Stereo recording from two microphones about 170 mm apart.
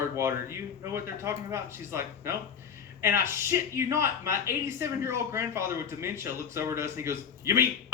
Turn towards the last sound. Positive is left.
turn(degrees=-15)  # may be behind; listen again after turning